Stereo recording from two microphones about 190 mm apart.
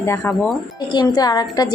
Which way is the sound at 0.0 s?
15° left (ahead or behind).